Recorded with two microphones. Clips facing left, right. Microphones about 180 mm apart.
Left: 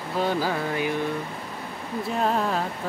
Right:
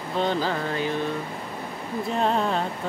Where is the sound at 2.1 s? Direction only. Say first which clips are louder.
Right 1 dB; 5° left (ahead or behind).